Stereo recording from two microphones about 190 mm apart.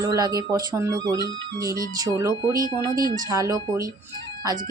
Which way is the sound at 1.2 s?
55° right (ahead or behind).